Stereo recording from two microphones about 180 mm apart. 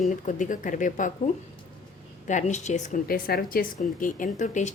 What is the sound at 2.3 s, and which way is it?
A woman's voice, 40° left (ahead or behind).